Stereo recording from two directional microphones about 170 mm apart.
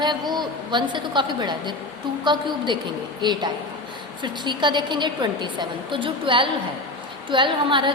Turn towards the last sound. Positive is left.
turn(degrees=-30)  # may be behind; listen again after turning